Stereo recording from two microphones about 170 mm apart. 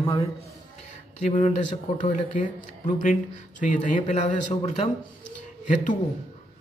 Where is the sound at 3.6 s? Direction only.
50° left (ahead or behind).